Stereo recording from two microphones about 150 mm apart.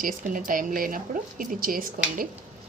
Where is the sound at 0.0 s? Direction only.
60° right (ahead or behind).